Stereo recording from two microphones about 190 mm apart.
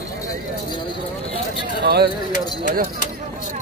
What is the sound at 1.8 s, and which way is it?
Speech, 55° right (ahead or behind).